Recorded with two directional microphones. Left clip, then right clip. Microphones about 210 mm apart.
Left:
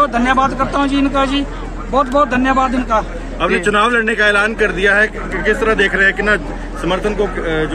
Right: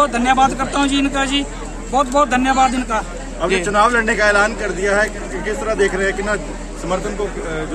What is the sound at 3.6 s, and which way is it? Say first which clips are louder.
Speech: even; 45° left (ahead or behind).